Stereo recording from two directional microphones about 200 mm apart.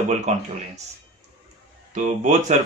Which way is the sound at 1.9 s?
35° right (ahead or behind).